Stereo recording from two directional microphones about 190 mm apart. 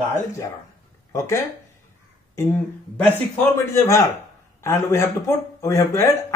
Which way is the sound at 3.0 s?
10° left (ahead or behind).